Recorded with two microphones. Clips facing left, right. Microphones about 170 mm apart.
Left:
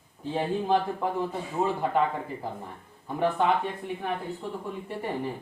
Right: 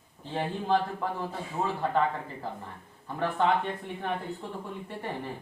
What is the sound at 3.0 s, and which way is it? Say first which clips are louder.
Speech: left 3 dB; 15° left (ahead or behind).